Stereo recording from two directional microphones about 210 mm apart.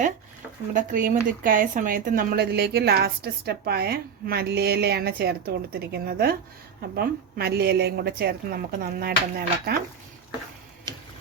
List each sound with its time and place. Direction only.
0.7 s speech: 40° right (ahead or behind)